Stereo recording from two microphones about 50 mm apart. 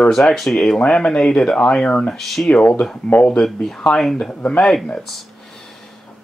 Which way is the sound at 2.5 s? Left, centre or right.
Left.